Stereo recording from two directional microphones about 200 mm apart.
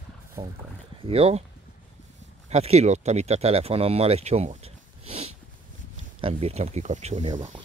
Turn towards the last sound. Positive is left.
turn(degrees=-35)  # may be behind; listen again after turning